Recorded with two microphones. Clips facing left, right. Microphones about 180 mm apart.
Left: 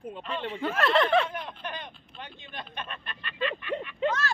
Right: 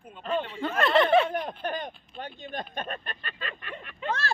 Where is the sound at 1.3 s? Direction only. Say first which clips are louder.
Right 6 dB; 40° right (ahead or behind).